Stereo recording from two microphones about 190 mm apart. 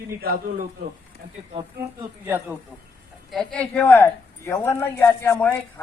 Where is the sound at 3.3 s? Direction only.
5° left (ahead or behind).